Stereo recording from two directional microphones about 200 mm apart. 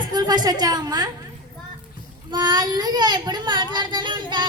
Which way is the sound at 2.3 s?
20° right (ahead or behind).